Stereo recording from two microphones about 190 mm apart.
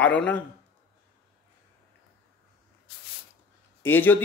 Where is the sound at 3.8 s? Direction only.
10° left (ahead or behind).